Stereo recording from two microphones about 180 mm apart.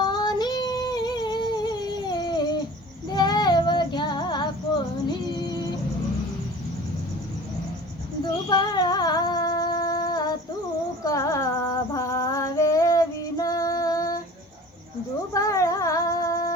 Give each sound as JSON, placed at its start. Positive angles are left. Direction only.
{"t": 0.0, "sound": "female singing", "side_deg": 25}
{"t": 3.1, "sound": "child singing", "side_deg": 25}
{"t": 8.2, "sound": "music", "side_deg": 25}
{"t": 11.9, "sound": "female singing", "side_deg": 20}
{"t": 15.3, "sound": "a sound", "side_deg": 20}